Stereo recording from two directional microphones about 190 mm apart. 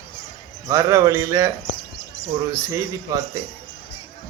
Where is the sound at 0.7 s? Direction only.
15° right (ahead or behind).